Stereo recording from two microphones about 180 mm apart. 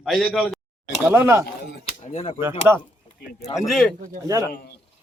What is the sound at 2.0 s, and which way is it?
Speech, 35° left (ahead or behind).